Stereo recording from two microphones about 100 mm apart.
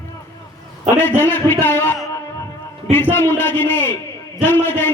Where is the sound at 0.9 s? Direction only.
20° left (ahead or behind).